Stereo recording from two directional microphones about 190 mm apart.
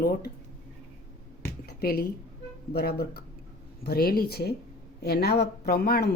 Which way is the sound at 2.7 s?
55° left (ahead or behind).